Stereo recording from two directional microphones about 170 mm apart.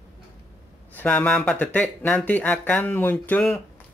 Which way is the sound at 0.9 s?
10° left (ahead or behind).